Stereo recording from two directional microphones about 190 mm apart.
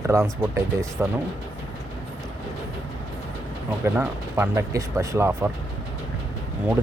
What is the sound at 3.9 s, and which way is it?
Speech, 10° right (ahead or behind).